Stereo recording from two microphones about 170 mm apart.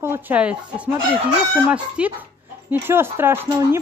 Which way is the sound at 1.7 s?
10° right (ahead or behind).